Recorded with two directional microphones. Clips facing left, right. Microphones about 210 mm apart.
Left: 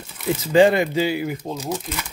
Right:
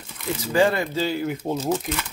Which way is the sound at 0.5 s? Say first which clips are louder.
Left 5 dB; 20° left (ahead or behind).